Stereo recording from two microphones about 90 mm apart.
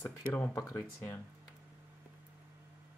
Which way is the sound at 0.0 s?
20° left (ahead or behind).